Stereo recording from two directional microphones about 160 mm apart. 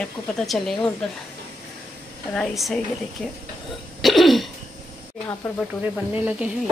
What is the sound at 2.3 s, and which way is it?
Speech, centre (ahead or behind).